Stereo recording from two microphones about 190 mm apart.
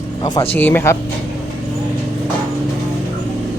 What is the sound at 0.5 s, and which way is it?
Speech, 10° left (ahead or behind).